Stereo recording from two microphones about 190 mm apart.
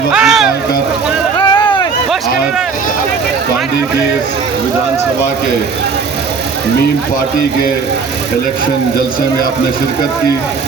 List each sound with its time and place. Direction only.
0.1 s music: 5° right (ahead or behind)
1.4 s vehicle: 25° left (ahead or behind)